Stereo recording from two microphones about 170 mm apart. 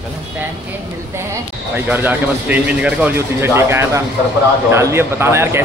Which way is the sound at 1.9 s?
10° right (ahead or behind).